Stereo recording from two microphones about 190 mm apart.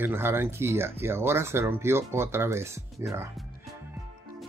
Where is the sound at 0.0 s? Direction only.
10° right (ahead or behind).